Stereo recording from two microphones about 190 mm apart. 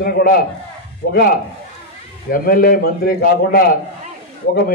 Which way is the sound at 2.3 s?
50° left (ahead or behind).